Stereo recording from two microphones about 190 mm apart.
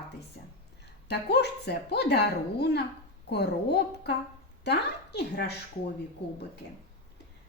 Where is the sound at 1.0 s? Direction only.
60° left (ahead or behind).